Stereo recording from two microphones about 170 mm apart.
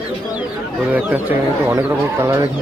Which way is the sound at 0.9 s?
10° right (ahead or behind).